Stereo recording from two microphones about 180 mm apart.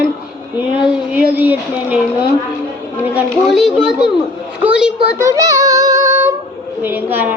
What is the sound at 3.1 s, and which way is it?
A child's voice, centre (ahead or behind).